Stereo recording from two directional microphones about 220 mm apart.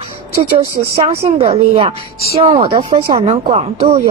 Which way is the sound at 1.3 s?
25° right (ahead or behind).